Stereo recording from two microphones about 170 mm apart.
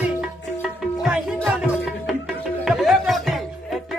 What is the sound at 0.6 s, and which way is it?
Music, 5° right (ahead or behind).